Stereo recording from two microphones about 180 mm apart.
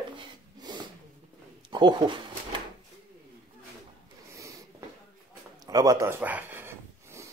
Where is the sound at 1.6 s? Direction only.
25° right (ahead or behind).